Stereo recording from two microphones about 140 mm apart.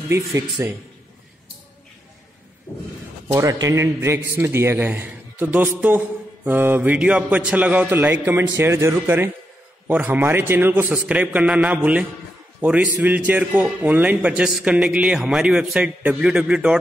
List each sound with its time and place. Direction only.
0.3 s speech: 20° right (ahead or behind)
3.3 s a man's voice: 25° right (ahead or behind)